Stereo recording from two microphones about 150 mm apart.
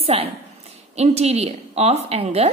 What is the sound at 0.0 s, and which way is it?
A woman's voice, 40° right (ahead or behind).